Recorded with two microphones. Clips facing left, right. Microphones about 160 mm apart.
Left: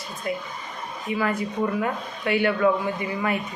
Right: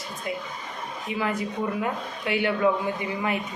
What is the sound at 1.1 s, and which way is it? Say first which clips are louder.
Speech: left 4 dB; 20° right (ahead or behind).